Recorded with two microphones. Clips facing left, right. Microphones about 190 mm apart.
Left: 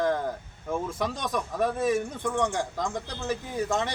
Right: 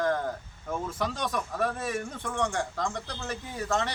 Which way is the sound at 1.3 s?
15° left (ahead or behind).